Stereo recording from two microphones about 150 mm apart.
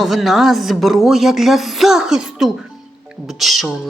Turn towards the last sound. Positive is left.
turn(degrees=0)  # may be behind; listen again after turning